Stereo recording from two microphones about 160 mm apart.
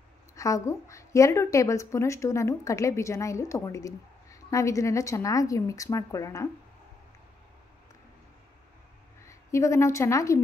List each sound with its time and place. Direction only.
0.4 s a woman's voice: 20° left (ahead or behind)
9.3 s a woman's voice: 20° left (ahead or behind)